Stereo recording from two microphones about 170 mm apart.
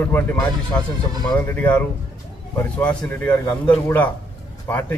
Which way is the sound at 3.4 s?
25° left (ahead or behind).